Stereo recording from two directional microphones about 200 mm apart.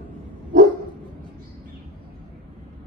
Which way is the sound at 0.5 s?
45° right (ahead or behind).